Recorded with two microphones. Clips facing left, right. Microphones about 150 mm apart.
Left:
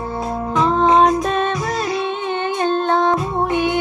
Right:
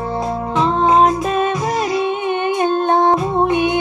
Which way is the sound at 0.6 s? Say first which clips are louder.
Even; 5° right (ahead or behind).